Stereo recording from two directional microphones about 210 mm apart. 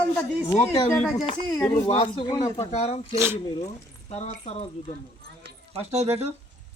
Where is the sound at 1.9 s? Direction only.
25° left (ahead or behind).